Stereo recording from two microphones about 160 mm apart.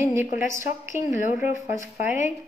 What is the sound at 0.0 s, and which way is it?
Speech, 15° right (ahead or behind).